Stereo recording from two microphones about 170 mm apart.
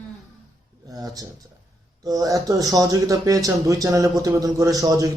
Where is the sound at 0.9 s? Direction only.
20° right (ahead or behind).